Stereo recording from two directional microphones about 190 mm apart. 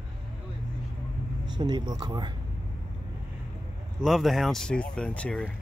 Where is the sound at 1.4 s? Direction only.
20° right (ahead or behind).